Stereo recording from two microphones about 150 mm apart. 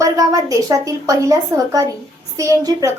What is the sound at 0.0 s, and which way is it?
A woman's voice, 25° right (ahead or behind).